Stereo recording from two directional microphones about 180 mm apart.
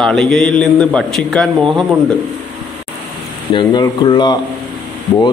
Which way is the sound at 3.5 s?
25° left (ahead or behind).